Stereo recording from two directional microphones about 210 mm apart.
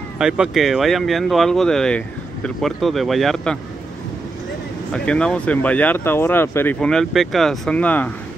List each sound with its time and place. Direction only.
0.2 s speech: 5° right (ahead or behind)
4.9 s speech: 5° left (ahead or behind)